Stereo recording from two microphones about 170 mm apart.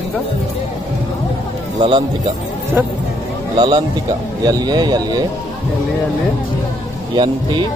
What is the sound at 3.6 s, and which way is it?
Speech, 30° right (ahead or behind).